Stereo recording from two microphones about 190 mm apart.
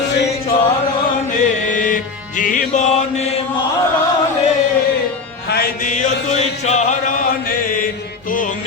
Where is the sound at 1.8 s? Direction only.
45° left (ahead or behind).